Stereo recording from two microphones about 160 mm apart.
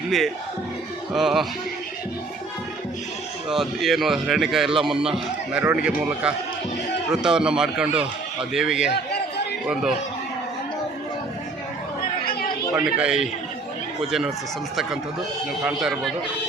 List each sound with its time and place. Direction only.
1.1 s a man's voice: centre (ahead or behind)
3.5 s a man's voice: centre (ahead or behind)
12.7 s a man's voice: 5° right (ahead or behind)
15.6 s a man's voice: centre (ahead or behind)